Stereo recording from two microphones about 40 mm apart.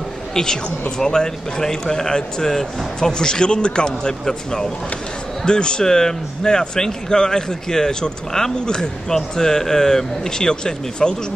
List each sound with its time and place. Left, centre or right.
0.3 s a man's voice: centre